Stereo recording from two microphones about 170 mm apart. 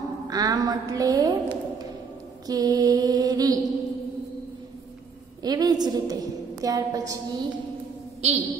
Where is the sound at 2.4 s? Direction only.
20° right (ahead or behind).